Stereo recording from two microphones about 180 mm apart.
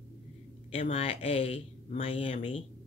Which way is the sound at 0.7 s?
35° left (ahead or behind).